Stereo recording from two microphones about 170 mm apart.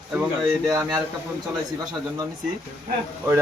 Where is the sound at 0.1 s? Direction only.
5° right (ahead or behind).